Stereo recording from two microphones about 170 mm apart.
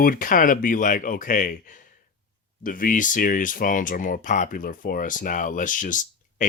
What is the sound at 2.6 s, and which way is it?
Speech, 55° left (ahead or behind).